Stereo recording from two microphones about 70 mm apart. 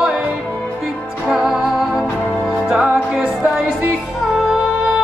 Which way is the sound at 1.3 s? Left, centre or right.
Centre.